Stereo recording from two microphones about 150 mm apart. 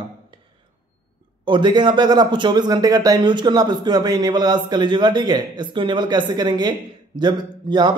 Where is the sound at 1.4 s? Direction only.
30° right (ahead or behind).